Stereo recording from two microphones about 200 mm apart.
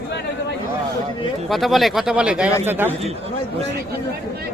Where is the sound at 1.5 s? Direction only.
Centre (ahead or behind).